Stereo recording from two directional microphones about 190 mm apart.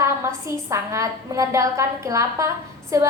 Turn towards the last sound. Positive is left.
turn(degrees=-15)  # may be behind; listen again after turning